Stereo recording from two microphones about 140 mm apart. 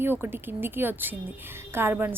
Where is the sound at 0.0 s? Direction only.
15° right (ahead or behind).